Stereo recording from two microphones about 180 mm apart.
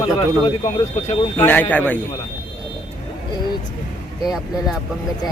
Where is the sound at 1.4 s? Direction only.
10° left (ahead or behind).